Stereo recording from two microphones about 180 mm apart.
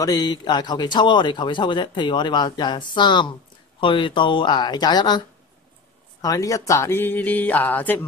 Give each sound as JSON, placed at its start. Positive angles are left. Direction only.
{"t": 0.0, "sound": "speech", "side_deg": 20}
{"t": 6.2, "sound": "speech", "side_deg": 20}